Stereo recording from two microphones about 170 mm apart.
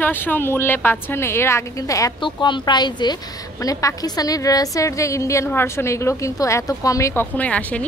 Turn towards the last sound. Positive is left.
turn(degrees=10)  # may be behind; listen again after turning